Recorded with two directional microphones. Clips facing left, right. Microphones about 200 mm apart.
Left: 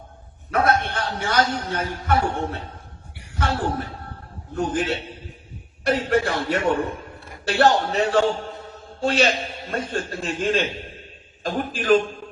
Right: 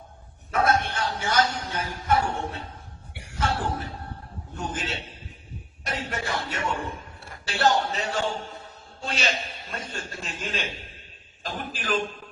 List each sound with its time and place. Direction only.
0.5 s a man's voice: 60° left (ahead or behind)
3.3 s a man's voice: 60° left (ahead or behind)